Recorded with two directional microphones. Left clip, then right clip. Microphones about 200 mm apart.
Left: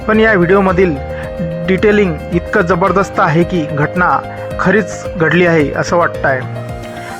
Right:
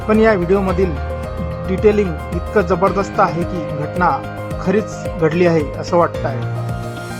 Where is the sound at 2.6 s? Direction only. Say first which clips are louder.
Left 3 dB; 15° left (ahead or behind).